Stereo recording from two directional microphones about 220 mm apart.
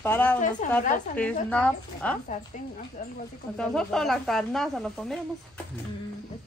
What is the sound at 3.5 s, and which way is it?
Speech, 5° left (ahead or behind).